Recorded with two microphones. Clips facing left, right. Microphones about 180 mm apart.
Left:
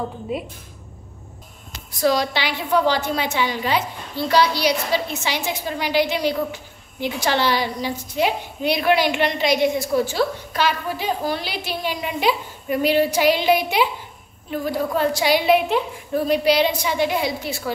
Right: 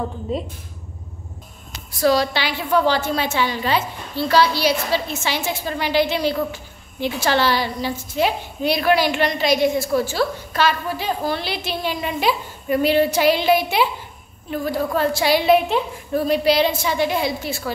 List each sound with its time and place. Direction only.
1.9 s a woman's voice: 20° left (ahead or behind)